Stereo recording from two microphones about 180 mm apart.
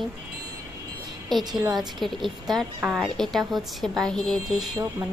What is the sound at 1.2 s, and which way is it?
Speech, centre (ahead or behind).